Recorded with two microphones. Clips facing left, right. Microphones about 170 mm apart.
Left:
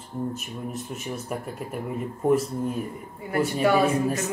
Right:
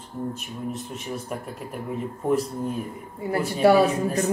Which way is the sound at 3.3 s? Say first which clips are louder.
Right 3 dB; 35° right (ahead or behind).